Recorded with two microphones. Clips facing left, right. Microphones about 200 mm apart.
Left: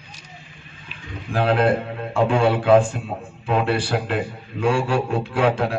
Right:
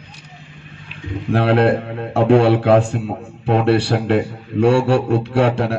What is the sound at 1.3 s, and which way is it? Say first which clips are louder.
A man's voice: right 4 dB; 70° right (ahead or behind).